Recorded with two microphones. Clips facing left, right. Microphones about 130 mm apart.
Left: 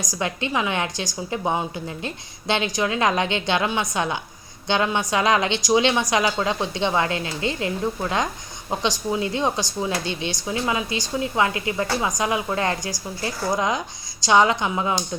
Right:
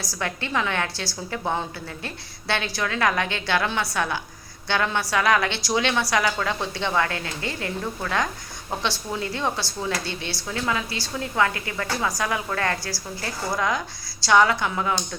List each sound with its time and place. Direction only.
0.0 s speech: 15° left (ahead or behind)